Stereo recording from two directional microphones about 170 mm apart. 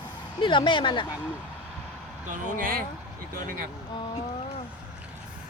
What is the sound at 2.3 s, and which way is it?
Speech, 55° right (ahead or behind).